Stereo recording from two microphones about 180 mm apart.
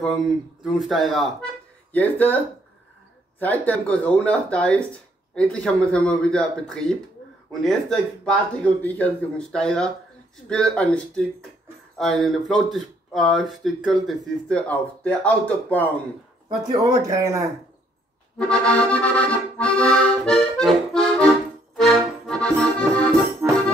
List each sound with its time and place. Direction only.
0.7 s speech: centre (ahead or behind)
16.4 s speech: 15° right (ahead or behind)
18.5 s speech: 5° left (ahead or behind)
21.7 s accordion: centre (ahead or behind)
23.4 s music: 10° right (ahead or behind)